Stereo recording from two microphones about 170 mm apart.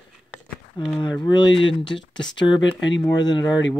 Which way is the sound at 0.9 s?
25° left (ahead or behind).